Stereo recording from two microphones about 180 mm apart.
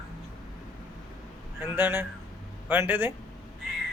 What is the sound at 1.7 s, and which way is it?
A man's voice, 10° right (ahead or behind).